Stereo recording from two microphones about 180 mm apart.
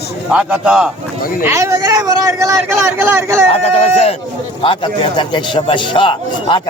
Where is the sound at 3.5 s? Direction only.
35° left (ahead or behind).